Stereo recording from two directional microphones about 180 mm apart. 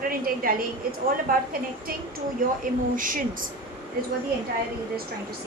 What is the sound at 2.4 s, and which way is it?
Speech, 50° right (ahead or behind).